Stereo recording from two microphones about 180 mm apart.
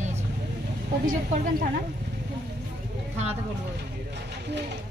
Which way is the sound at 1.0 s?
45° right (ahead or behind).